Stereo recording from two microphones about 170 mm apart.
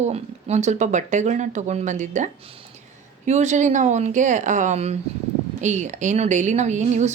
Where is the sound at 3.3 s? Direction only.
40° right (ahead or behind).